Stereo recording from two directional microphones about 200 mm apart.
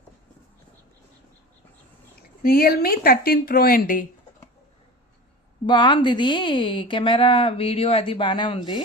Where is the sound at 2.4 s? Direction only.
50° left (ahead or behind).